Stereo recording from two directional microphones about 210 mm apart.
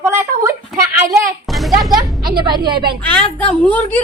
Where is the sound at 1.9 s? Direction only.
20° right (ahead or behind).